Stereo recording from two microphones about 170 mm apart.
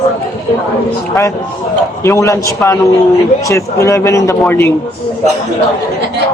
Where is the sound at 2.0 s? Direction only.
15° left (ahead or behind).